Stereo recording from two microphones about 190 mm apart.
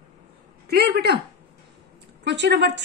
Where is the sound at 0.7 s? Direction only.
55° right (ahead or behind).